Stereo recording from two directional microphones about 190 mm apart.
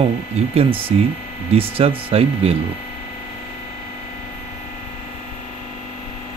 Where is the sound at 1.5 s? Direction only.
30° right (ahead or behind).